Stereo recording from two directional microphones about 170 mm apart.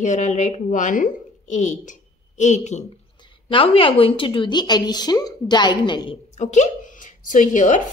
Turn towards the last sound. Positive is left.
turn(degrees=45)  # may be behind; listen again after turning